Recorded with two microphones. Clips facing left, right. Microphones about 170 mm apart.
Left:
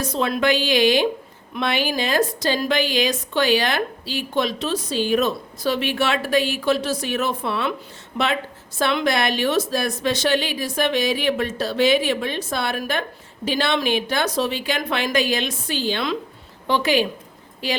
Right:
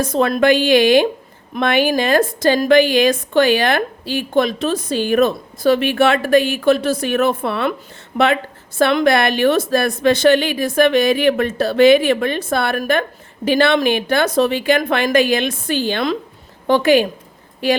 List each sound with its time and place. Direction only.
0.0 s a woman's voice: 50° right (ahead or behind)